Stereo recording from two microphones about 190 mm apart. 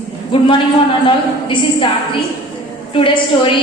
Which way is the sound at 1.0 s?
25° left (ahead or behind).